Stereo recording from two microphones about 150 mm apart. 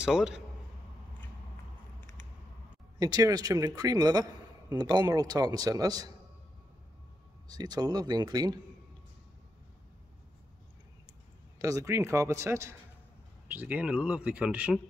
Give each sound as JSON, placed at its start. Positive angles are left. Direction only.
{"t": 0.0, "sound": "a man's voice", "side_deg": -5}
{"t": 3.0, "sound": "a man's voice", "side_deg": -25}
{"t": 7.4, "sound": "a man's voice", "side_deg": -25}
{"t": 11.5, "sound": "a man's voice", "side_deg": -20}